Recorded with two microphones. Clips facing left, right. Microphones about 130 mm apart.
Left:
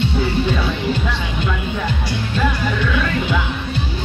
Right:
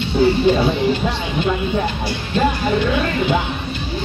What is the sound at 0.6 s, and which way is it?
Speech, 35° right (ahead or behind).